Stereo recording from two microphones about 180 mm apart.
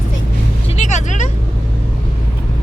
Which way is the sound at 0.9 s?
40° left (ahead or behind).